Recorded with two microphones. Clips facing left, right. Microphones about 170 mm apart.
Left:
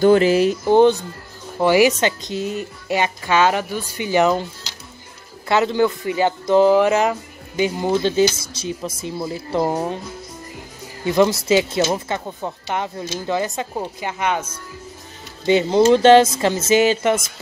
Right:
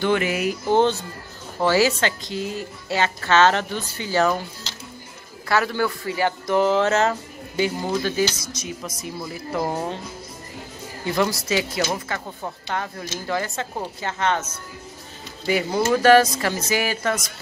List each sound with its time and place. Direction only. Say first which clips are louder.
0.0 s speech: left 8 dB; 35° left (ahead or behind)
0.7 s a woman's voice: left 4 dB; 15° left (ahead or behind)
11.1 s a man's voice: left 7 dB; 20° left (ahead or behind)
15.4 s a man's voice: left 7 dB; 25° left (ahead or behind)